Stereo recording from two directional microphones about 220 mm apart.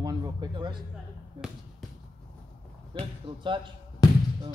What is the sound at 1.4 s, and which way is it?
Basketball bounce, 20° right (ahead or behind).